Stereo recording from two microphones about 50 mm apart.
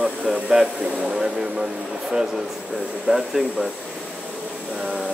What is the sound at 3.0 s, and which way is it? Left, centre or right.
Speech, centre.